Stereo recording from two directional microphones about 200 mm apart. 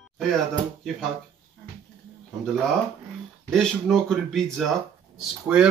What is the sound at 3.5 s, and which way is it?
Speech, centre (ahead or behind).